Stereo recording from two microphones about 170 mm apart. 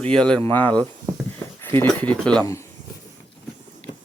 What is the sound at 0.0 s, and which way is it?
Speech, 5° left (ahead or behind).